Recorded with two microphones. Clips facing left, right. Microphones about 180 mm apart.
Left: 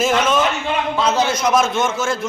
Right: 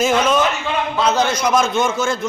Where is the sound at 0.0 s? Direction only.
Centre (ahead or behind).